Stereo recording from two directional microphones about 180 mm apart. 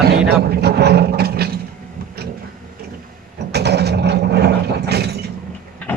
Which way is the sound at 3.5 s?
65° right (ahead or behind).